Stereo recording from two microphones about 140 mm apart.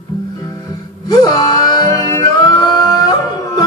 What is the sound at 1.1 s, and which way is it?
Music, 30° left (ahead or behind).